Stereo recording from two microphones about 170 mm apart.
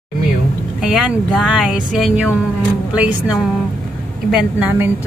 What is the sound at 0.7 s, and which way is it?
A woman's voice, 5° right (ahead or behind).